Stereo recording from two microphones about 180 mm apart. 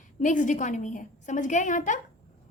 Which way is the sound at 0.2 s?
45° left (ahead or behind).